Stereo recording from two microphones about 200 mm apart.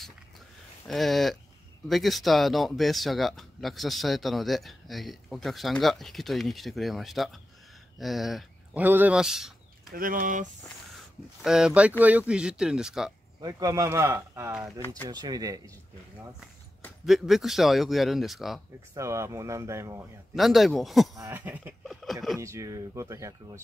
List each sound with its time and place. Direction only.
0.8 s speech: centre (ahead or behind)
9.9 s speech: 45° right (ahead or behind)
11.4 s speech: 5° right (ahead or behind)
13.4 s speech: 15° right (ahead or behind)
16.8 s speech: centre (ahead or behind)
18.9 s speech: 15° right (ahead or behind)
20.3 s speech: centre (ahead or behind)
22.4 s speech: 15° right (ahead or behind)